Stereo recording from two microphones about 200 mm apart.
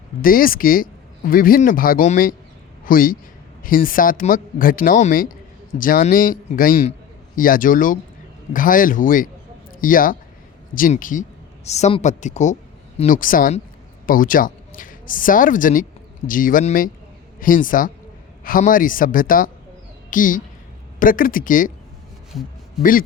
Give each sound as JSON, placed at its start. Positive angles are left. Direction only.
{"t": 0.2, "sound": "speech", "side_deg": 45}
{"t": 22.8, "sound": "speech", "side_deg": 45}